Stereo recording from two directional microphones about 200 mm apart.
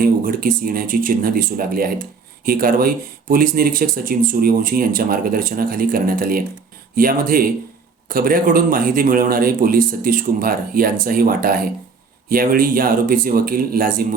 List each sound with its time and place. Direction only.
0.0 s speech: 45° right (ahead or behind)